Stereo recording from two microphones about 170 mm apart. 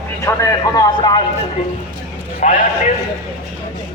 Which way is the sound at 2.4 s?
40° left (ahead or behind).